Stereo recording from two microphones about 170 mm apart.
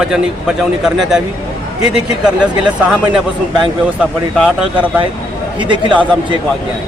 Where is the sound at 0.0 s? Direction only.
5° right (ahead or behind).